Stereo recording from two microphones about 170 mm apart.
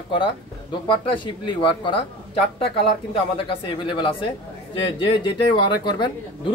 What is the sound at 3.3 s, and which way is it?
Speech, 30° left (ahead or behind).